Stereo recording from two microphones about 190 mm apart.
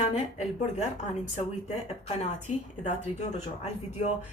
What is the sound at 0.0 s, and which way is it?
Speech, 35° left (ahead or behind).